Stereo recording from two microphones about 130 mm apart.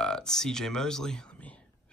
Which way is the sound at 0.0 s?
5° left (ahead or behind).